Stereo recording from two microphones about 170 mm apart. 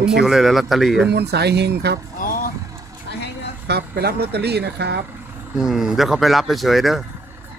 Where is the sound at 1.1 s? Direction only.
75° right (ahead or behind).